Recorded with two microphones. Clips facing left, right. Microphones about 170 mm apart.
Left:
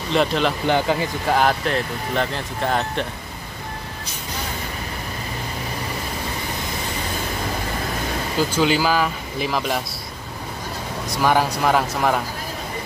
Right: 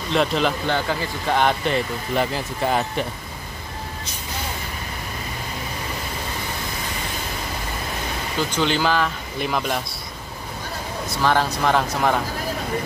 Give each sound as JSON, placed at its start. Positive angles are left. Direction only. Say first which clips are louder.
{"t": 0.1, "sound": "speech", "louder": "left 1 dB", "side_deg": 0}
{"t": 0.7, "sound": "speech", "louder": "left 4 dB", "side_deg": 15}
{"t": 1.2, "sound": "speech", "louder": "even", "side_deg": 5}
{"t": 8.5, "sound": "speech", "louder": "left 1 dB", "side_deg": 5}
{"t": 11.1, "sound": "speech", "louder": "left 2 dB", "side_deg": 10}